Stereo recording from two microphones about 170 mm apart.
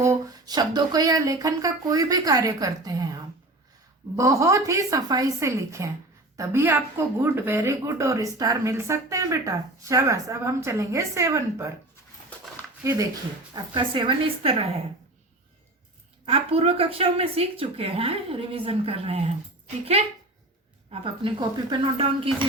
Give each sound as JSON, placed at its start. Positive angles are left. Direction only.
{"t": 0.0, "sound": "speech", "side_deg": -20}
{"t": 4.2, "sound": "a woman's voice", "side_deg": -20}
{"t": 12.8, "sound": "speech", "side_deg": -20}
{"t": 16.2, "sound": "speech", "side_deg": -35}